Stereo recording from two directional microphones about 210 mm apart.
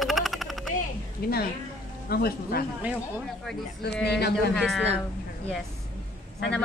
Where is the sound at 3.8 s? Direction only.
50° left (ahead or behind).